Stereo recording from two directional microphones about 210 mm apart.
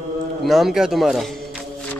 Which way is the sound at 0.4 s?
Centre (ahead or behind).